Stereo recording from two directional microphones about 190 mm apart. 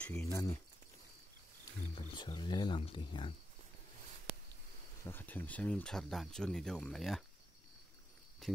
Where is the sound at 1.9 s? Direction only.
25° left (ahead or behind).